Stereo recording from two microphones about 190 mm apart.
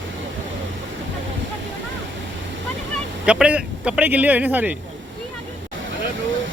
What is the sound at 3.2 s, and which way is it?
Speech, 5° right (ahead or behind).